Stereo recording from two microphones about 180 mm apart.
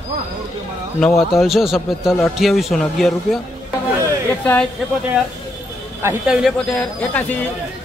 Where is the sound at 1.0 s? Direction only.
5° left (ahead or behind).